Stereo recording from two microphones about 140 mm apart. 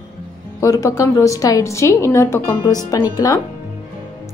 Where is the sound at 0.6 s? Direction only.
25° left (ahead or behind).